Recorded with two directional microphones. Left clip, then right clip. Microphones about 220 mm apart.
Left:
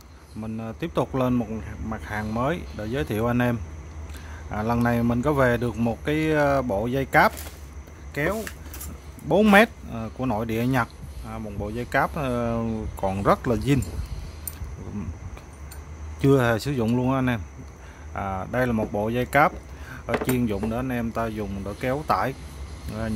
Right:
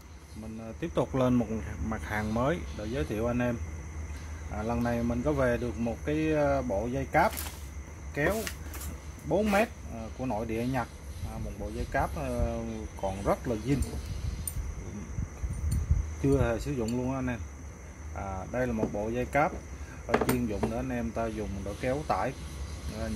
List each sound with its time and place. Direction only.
0.4 s speech: 30° left (ahead or behind)
0.7 s speech: 20° left (ahead or behind)
4.6 s speech: 30° left (ahead or behind)
9.3 s speech: 45° left (ahead or behind); by 10.9 s 30° left (ahead or behind)
11.9 s speech: 35° left (ahead or behind)
16.2 s speech: 35° left (ahead or behind)